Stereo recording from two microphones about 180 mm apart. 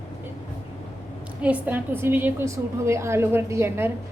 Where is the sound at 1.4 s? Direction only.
5° right (ahead or behind).